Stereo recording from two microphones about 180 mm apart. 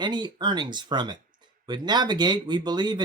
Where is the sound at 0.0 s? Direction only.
25° right (ahead or behind).